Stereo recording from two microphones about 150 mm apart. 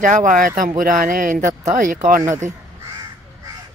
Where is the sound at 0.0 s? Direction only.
60° right (ahead or behind).